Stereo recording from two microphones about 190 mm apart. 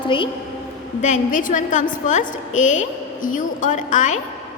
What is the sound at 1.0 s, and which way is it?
A woman's voice, 40° left (ahead or behind).